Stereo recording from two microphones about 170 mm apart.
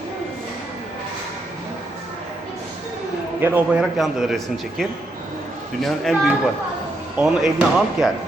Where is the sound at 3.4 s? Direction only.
10° right (ahead or behind).